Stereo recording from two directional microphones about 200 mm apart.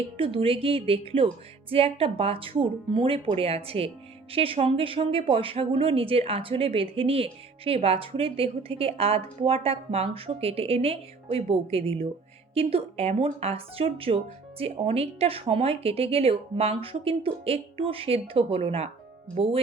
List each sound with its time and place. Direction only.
0.2 s speech: 25° right (ahead or behind)